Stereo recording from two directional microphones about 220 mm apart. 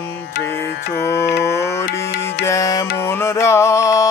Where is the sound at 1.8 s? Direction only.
45° left (ahead or behind).